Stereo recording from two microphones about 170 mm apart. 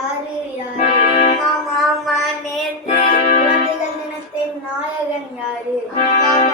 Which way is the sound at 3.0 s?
40° left (ahead or behind).